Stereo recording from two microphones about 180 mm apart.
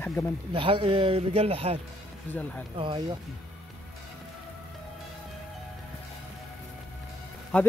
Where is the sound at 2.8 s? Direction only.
25° right (ahead or behind).